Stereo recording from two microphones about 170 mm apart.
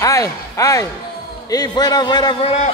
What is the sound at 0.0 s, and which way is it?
A man's voice, 20° left (ahead or behind).